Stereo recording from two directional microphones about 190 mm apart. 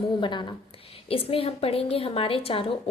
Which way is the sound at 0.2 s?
25° left (ahead or behind).